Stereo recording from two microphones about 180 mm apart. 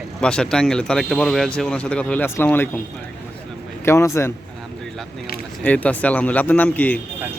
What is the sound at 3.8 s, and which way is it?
Speech, 15° left (ahead or behind).